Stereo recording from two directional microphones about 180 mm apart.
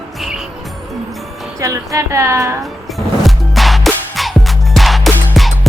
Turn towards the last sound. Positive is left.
turn(degrees=0)  # may be behind; listen again after turning